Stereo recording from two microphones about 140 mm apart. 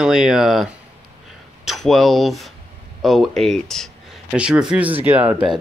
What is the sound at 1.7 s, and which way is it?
Speech, centre (ahead or behind).